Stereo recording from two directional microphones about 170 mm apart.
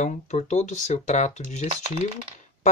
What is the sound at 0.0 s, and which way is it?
Speech, 45° left (ahead or behind).